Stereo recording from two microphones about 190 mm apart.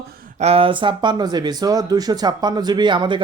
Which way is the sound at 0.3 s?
35° right (ahead or behind).